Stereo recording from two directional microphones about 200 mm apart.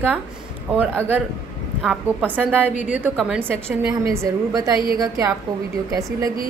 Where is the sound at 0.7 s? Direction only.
10° right (ahead or behind).